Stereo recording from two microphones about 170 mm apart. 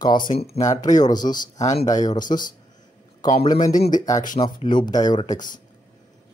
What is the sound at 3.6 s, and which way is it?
Speech, 50° left (ahead or behind).